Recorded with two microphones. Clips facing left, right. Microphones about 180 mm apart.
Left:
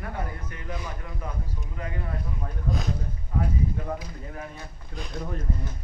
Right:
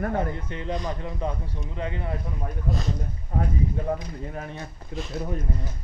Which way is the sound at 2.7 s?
Centre (ahead or behind).